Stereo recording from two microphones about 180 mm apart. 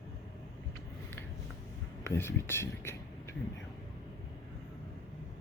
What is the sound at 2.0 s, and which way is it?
Speech, 15° left (ahead or behind).